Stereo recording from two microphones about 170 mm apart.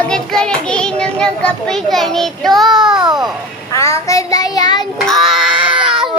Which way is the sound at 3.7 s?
15° left (ahead or behind).